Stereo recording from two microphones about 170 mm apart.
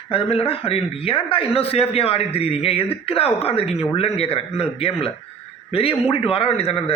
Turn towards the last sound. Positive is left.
turn(degrees=35)  # may be behind; listen again after turning